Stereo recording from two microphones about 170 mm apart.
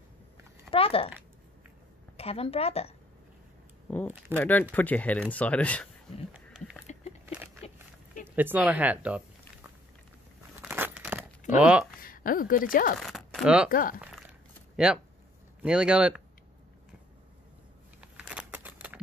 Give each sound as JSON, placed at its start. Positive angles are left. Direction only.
{"t": 0.7, "sound": "speech", "side_deg": 35}
{"t": 2.1, "sound": "a woman's voice", "side_deg": 35}
{"t": 3.9, "sound": "speech", "side_deg": 10}
{"t": 6.5, "sound": "a sound", "side_deg": -5}
{"t": 6.9, "sound": "a sound", "side_deg": 40}
{"t": 8.4, "sound": "speech", "side_deg": -10}
{"t": 10.6, "sound": "tearing", "side_deg": -10}
{"t": 11.6, "sound": "speech", "side_deg": -5}
{"t": 12.0, "sound": "speech", "side_deg": 55}
{"t": 13.0, "sound": "speech", "side_deg": 0}
{"t": 13.7, "sound": "speech", "side_deg": 55}
{"t": 14.9, "sound": "speech", "side_deg": -5}
{"t": 18.0, "sound": "a sound", "side_deg": -5}